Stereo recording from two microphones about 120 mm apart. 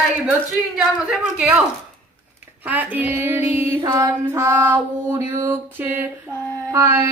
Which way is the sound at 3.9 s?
25° right (ahead or behind).